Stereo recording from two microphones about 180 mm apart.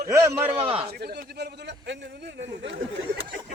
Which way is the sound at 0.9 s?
60° right (ahead or behind).